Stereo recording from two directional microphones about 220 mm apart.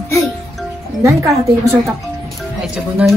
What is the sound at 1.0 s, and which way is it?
Speech, 15° right (ahead or behind).